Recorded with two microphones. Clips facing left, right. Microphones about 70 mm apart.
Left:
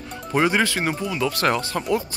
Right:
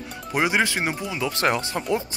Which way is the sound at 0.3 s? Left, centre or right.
Centre.